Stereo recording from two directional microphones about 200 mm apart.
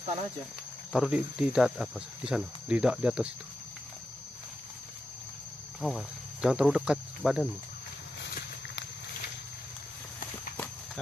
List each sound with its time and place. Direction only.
0.9 s speech: 5° right (ahead or behind)
5.8 s speech: centre (ahead or behind)
8.2 s walk: 55° left (ahead or behind)